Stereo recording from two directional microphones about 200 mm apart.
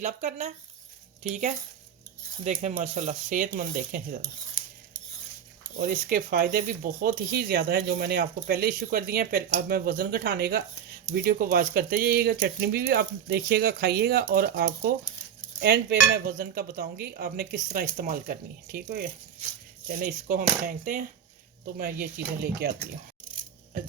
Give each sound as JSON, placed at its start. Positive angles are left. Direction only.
{"t": 0.0, "sound": "speech", "side_deg": -40}
{"t": 5.8, "sound": "speech", "side_deg": -45}
{"t": 21.8, "sound": "speech", "side_deg": -50}